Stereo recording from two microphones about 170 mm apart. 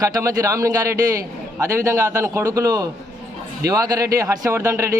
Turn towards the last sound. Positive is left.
turn(degrees=-15)  # may be behind; listen again after turning